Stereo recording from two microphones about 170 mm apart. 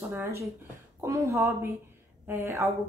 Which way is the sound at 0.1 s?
15° right (ahead or behind).